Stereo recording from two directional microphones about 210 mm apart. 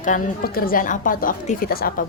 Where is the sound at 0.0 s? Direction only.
40° left (ahead or behind).